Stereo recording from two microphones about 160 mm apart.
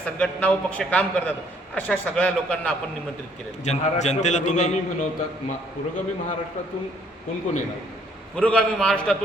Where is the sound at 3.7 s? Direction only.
45° left (ahead or behind).